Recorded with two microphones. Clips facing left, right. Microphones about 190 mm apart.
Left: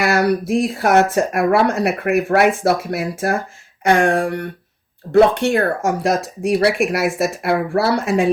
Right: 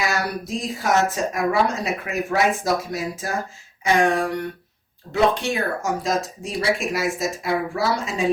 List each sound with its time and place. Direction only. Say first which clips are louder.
0.0 s speech: left 8 dB; 65° left (ahead or behind)